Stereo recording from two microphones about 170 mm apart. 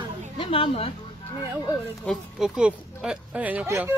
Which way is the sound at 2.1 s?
5° right (ahead or behind).